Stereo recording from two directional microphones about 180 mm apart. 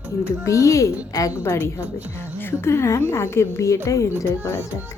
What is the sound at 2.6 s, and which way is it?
Speech, 15° left (ahead or behind).